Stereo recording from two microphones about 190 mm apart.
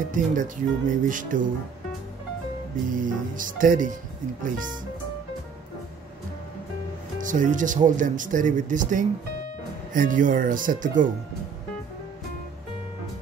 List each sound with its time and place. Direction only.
0.1 s speech: 45° right (ahead or behind)
2.9 s speech: 45° right (ahead or behind)
7.2 s speech: 45° right (ahead or behind)